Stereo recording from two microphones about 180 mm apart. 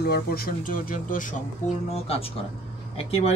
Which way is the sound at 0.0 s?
60° left (ahead or behind).